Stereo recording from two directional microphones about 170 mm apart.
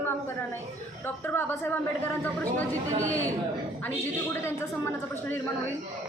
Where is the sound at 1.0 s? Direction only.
15° left (ahead or behind).